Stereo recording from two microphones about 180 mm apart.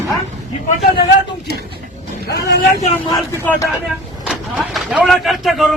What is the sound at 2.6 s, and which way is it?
Speech, 40° left (ahead or behind).